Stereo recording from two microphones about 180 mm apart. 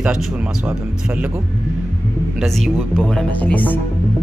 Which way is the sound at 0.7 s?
10° right (ahead or behind).